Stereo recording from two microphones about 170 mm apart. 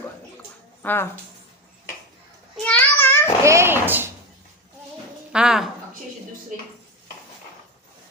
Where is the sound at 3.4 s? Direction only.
15° right (ahead or behind).